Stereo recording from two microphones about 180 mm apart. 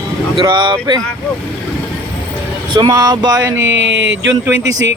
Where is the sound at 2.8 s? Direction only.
20° right (ahead or behind).